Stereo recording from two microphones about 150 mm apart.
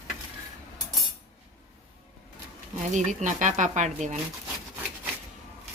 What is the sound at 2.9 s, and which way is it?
Speech, 55° right (ahead or behind).